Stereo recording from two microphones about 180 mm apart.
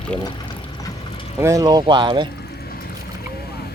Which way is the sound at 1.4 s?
15° right (ahead or behind).